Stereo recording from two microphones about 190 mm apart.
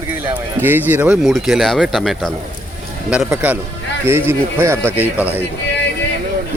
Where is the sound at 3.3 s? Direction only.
10° right (ahead or behind).